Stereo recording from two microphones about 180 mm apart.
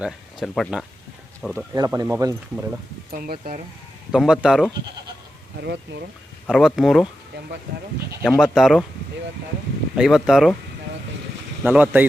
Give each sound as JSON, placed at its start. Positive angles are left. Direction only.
{"t": 0.0, "sound": "speech", "side_deg": 0}
{"t": 1.7, "sound": "speech", "side_deg": -20}
{"t": 3.1, "sound": "speech", "side_deg": -55}
{"t": 4.1, "sound": "speech", "side_deg": -5}
{"t": 5.5, "sound": "speech", "side_deg": -65}
{"t": 6.5, "sound": "speech", "side_deg": 0}
{"t": 8.2, "sound": "speech", "side_deg": 0}
{"t": 10.0, "sound": "speech", "side_deg": 0}
{"t": 11.6, "sound": "speech", "side_deg": -10}